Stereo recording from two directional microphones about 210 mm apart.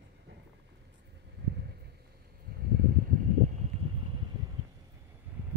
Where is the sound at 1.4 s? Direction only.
55° right (ahead or behind).